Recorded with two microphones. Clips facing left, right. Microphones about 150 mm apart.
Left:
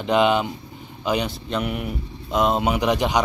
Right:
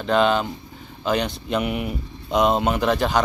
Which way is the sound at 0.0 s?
15° left (ahead or behind).